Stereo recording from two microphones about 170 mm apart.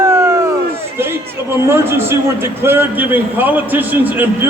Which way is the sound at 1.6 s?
15° right (ahead or behind).